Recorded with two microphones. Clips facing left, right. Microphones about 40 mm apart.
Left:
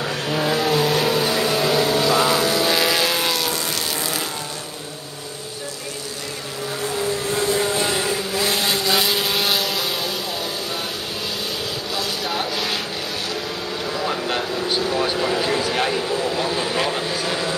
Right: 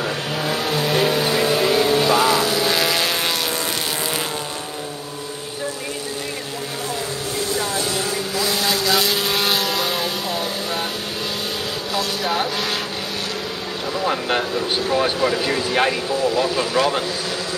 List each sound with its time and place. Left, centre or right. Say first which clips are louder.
0.0 s vehicle: left 1 dB; centre
8.0 s vehicle: left 1 dB; centre
11.9 s a sound: right 4 dB; centre
13.9 s vehicle: right 4 dB; centre
15.7 s a sound: right 2 dB; centre
16.2 s vehicle: right 3 dB; centre
16.6 s vehicle: right 3 dB; centre